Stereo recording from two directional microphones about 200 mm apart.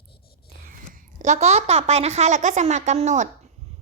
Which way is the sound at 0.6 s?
40° right (ahead or behind).